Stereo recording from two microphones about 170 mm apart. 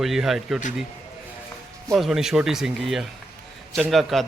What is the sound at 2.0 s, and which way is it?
A man's voice, 5° right (ahead or behind).